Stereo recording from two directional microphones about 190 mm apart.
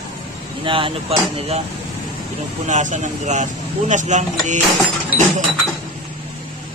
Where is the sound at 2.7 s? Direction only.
40° right (ahead or behind).